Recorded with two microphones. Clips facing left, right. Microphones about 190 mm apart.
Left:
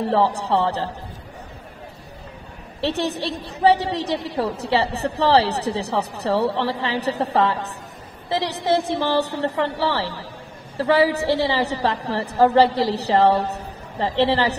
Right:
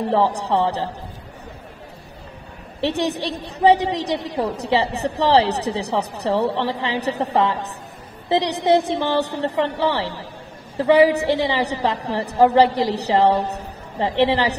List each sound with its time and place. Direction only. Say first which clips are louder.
0.1 s a woman's voice: right 1 dB; 15° right (ahead or behind)
2.8 s a woman's voice: right 1 dB; 15° right (ahead or behind)